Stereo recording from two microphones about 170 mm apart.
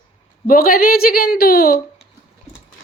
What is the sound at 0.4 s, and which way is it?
A woman's voice, 55° left (ahead or behind).